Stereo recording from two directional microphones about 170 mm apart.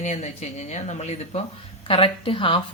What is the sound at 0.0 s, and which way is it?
Speech, 45° left (ahead or behind).